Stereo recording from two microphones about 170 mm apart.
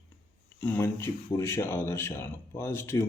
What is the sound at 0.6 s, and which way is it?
Speech, 15° left (ahead or behind).